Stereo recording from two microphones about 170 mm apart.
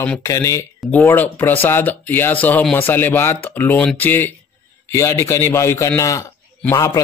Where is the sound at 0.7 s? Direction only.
5° left (ahead or behind).